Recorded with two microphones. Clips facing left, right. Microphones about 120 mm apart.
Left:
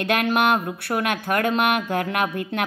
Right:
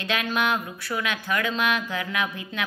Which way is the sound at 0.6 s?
55° left (ahead or behind).